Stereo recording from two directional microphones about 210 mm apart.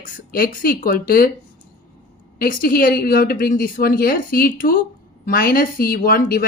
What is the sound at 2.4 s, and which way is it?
A woman's voice, 45° left (ahead or behind).